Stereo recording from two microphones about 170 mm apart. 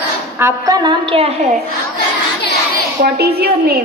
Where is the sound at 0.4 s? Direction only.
20° right (ahead or behind).